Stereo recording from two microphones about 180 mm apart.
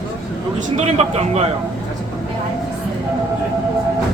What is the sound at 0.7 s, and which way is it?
Speech, 35° right (ahead or behind).